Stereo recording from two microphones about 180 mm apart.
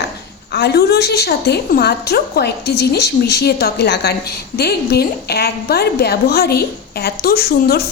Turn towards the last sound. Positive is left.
turn(degrees=60)  # may be behind; listen again after turning